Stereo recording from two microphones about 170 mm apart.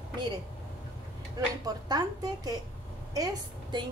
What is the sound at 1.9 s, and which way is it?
Speech, 25° right (ahead or behind).